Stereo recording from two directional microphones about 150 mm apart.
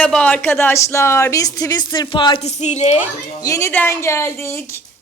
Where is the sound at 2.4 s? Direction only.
50° left (ahead or behind).